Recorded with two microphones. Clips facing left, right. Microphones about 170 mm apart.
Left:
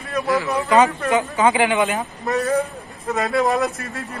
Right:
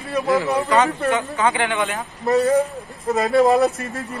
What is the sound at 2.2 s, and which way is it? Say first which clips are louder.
A man's voice: right 5 dB; 20° right (ahead or behind).